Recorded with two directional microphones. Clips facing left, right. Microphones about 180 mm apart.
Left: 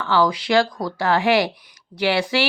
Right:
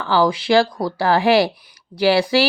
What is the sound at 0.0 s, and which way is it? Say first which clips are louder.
Speech: right 2 dB; 30° right (ahead or behind).